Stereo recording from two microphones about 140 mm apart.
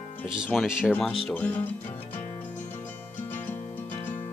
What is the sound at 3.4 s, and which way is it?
Music, 10° left (ahead or behind).